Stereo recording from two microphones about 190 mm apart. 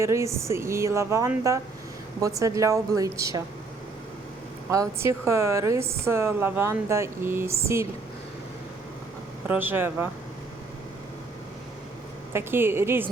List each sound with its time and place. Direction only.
0.0 s a woman's voice: 15° right (ahead or behind)
4.7 s a woman's voice: 15° right (ahead or behind)
9.5 s a woman's voice: 10° right (ahead or behind)
12.3 s a woman's voice: 10° right (ahead or behind)